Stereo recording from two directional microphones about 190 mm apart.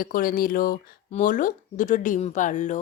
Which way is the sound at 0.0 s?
50° left (ahead or behind).